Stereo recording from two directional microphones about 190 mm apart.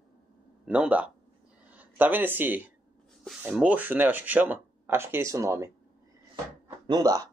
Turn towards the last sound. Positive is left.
turn(degrees=-20)  # may be behind; listen again after turning